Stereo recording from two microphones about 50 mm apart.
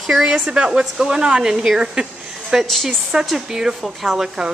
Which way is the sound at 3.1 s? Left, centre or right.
Centre.